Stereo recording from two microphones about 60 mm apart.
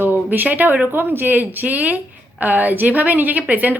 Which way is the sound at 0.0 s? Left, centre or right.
Right.